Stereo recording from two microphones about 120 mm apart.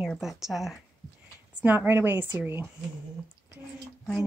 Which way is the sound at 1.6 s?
15° right (ahead or behind).